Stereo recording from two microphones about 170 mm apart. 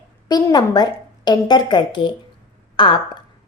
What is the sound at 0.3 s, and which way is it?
A woman's voice, 25° left (ahead or behind).